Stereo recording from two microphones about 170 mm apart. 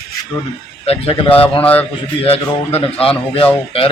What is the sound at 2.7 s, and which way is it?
Speech, 35° left (ahead or behind).